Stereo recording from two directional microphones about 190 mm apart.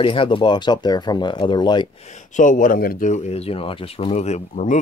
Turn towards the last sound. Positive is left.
turn(degrees=40)  # may be behind; listen again after turning